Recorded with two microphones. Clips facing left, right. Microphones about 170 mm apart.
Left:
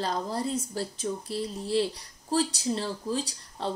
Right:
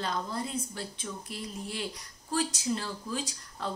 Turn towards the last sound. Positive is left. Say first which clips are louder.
# left 4 dB
turn(degrees=30)  # may be behind; listen again after turning